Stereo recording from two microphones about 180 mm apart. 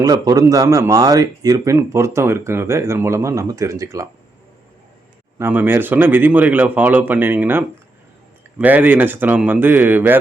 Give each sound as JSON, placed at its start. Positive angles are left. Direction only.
{"t": 0.0, "sound": "a man's voice", "side_deg": -20}
{"t": 5.4, "sound": "a man's voice", "side_deg": -10}